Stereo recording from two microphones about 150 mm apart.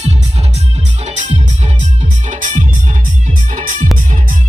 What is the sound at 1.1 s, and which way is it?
Music, 55° right (ahead or behind).